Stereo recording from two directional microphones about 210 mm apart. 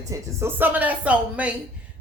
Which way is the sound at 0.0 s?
15° right (ahead or behind).